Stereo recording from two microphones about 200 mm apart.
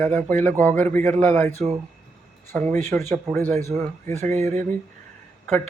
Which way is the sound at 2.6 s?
35° right (ahead or behind).